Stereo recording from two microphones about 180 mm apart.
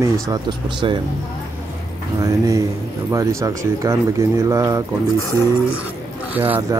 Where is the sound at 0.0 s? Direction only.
20° right (ahead or behind).